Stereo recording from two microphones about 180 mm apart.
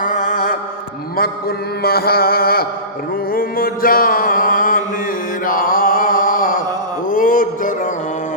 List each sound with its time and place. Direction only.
0.0 s mantra: 45° left (ahead or behind)
1.1 s a sound: 55° left (ahead or behind)
3.3 s music: 55° left (ahead or behind)
5.5 s mantra: 50° left (ahead or behind)
7.1 s music: 50° left (ahead or behind)